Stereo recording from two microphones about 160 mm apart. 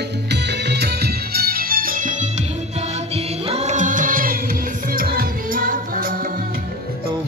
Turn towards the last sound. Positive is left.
turn(degrees=-60)  # may be behind; listen again after turning